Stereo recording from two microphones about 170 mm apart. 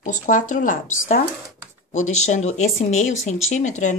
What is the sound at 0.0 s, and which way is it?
Speech, 50° left (ahead or behind).